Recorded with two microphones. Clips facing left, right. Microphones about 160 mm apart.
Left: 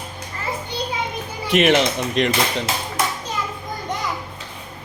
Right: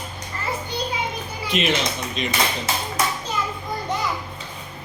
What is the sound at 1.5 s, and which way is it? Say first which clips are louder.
A man's voice: left 7 dB; 70° left (ahead or behind).